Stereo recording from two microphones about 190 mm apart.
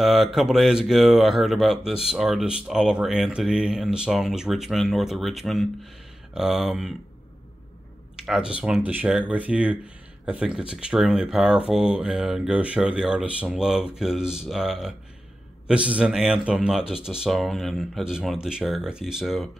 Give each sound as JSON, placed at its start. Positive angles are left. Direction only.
{"t": 0.0, "sound": "speech", "side_deg": 0}
{"t": 8.2, "sound": "speech", "side_deg": -5}